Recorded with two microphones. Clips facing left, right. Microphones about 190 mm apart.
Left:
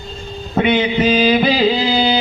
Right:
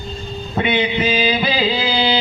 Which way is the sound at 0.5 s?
50° left (ahead or behind).